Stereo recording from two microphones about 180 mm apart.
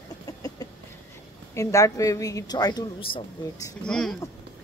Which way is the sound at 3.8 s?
5° left (ahead or behind).